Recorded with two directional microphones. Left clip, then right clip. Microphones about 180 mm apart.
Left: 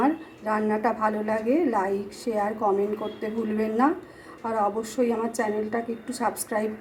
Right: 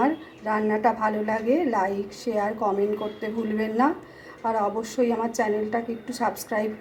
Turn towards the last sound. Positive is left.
turn(degrees=0)  # may be behind; listen again after turning